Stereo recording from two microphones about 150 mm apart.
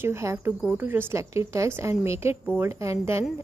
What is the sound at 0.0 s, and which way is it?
A woman's voice, 20° right (ahead or behind).